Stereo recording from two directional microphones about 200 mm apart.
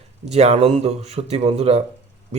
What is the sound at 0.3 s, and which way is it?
Speech, 30° right (ahead or behind).